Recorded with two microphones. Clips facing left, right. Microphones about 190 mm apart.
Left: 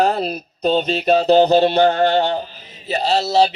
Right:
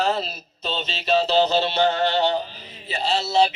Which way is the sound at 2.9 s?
40° left (ahead or behind).